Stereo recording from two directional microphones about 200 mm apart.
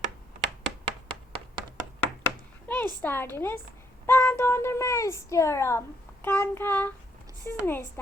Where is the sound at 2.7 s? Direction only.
10° left (ahead or behind).